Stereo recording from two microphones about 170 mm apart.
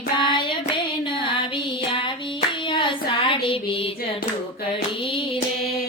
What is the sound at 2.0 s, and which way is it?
Hands, 30° left (ahead or behind).